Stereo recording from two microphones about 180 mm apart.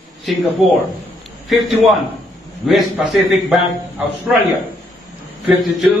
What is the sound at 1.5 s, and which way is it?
A man's voice, centre (ahead or behind).